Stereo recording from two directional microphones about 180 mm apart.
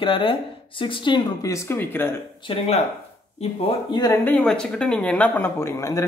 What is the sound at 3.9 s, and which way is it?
Speech, 20° left (ahead or behind).